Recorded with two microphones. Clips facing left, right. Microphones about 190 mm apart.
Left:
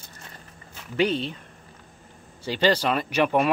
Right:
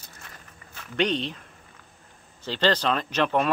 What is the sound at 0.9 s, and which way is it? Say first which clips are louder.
Speech: left 2 dB; 5° left (ahead or behind).